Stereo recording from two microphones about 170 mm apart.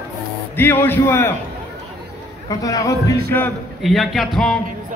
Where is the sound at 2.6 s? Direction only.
20° left (ahead or behind).